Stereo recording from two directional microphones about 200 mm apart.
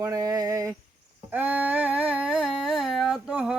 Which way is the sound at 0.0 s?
15° right (ahead or behind).